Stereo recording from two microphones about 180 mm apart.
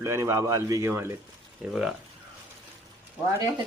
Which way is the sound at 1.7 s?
Centre (ahead or behind).